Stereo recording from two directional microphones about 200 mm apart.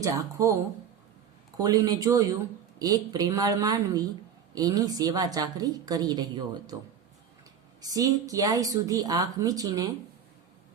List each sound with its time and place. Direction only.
0.0 s speech: 15° right (ahead or behind)
1.5 s a woman's voice: 15° right (ahead or behind)
7.8 s speech: 20° right (ahead or behind)